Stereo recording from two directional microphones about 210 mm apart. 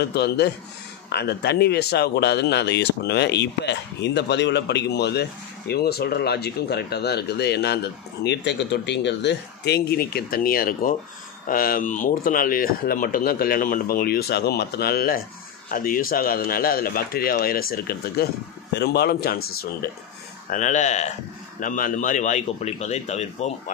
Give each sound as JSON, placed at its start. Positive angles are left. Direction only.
{"t": 0.0, "sound": "speech", "side_deg": 50}
{"t": 20.4, "sound": "speech", "side_deg": 35}